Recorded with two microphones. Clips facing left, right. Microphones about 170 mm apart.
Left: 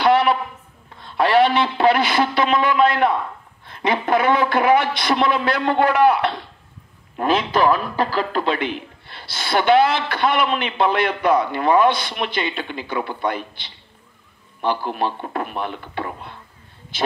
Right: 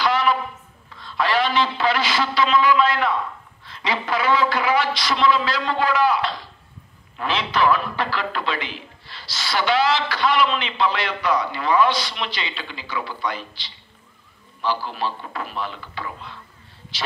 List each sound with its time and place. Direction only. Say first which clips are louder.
0.0 s a sound: left 5 dB; 60° left (ahead or behind)
1.0 s a woman's voice: left 6 dB; 60° left (ahead or behind)
7.2 s speech: left 4 dB; 45° left (ahead or behind)
8.5 s a woman's voice: left 7 dB; 55° left (ahead or behind)